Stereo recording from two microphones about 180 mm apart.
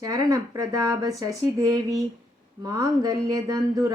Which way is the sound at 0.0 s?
20° right (ahead or behind).